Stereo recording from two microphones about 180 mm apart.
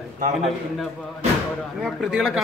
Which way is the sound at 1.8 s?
Centre (ahead or behind).